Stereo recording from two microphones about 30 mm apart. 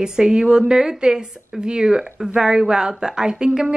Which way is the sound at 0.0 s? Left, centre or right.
Right.